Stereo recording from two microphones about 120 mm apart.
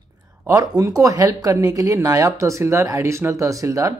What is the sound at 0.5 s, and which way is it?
Speech, 30° right (ahead or behind).